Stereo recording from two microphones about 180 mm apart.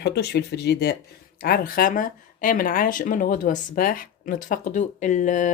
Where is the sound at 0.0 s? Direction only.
65° left (ahead or behind).